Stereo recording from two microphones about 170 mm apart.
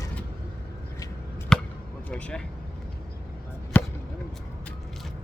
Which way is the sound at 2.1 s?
5° left (ahead or behind).